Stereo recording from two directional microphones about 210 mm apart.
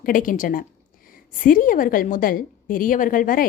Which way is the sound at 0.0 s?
40° left (ahead or behind).